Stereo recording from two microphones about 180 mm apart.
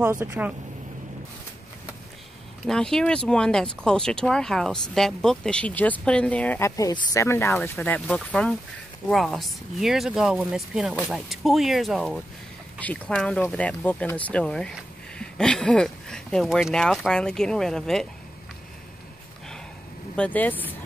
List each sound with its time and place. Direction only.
0.1 s speech: 15° right (ahead or behind)
2.6 s speech: 5° left (ahead or behind)
20.2 s speech: 10° left (ahead or behind)